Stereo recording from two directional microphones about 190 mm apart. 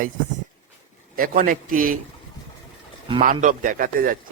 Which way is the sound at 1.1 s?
45° right (ahead or behind).